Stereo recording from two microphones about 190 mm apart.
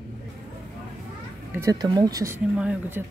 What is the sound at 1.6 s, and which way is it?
Speech, 20° right (ahead or behind).